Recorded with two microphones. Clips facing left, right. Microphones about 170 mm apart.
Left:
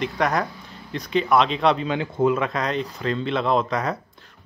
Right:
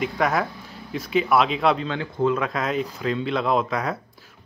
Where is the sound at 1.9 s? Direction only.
15° left (ahead or behind).